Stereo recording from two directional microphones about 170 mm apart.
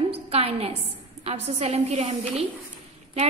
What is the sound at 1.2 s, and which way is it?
A woman's voice, 40° right (ahead or behind).